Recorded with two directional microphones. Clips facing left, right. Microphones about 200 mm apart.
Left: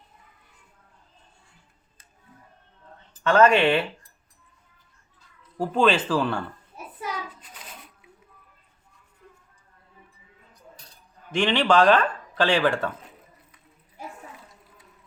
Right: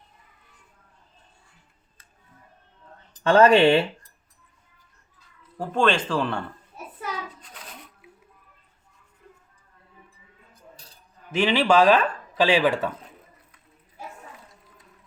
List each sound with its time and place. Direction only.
3.1 s speech: 30° right (ahead or behind)
5.5 s speech: 5° left (ahead or behind)
11.3 s speech: 5° right (ahead or behind)